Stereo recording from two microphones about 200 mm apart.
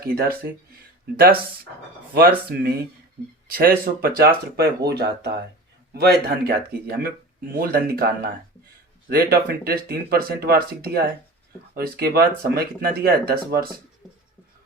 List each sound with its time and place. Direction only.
0.0 s speech: 50° right (ahead or behind)
2.1 s speech: 50° right (ahead or behind)